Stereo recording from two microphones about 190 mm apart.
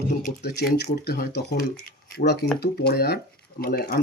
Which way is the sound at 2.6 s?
60° left (ahead or behind).